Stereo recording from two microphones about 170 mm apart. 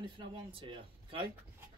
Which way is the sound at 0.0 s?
30° right (ahead or behind).